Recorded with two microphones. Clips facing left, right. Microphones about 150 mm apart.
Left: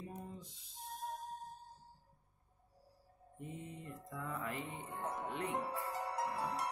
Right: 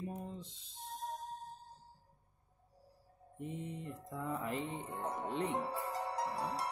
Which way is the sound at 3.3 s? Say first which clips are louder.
Right 5 dB; 20° right (ahead or behind).